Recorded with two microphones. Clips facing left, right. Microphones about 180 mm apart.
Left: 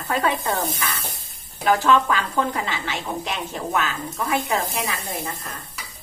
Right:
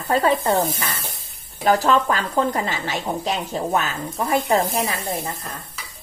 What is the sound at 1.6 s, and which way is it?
Speech, 40° right (ahead or behind).